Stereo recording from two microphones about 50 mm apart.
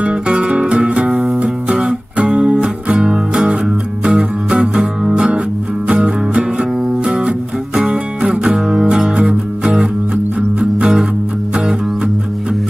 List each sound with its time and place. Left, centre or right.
0.0 s music: right